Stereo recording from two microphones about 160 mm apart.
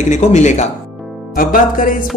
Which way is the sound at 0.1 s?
45° left (ahead or behind).